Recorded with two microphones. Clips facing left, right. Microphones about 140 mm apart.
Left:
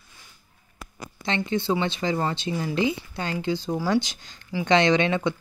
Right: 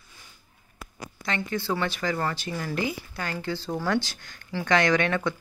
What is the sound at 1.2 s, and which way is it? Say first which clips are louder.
Speech: left 4 dB; 25° left (ahead or behind).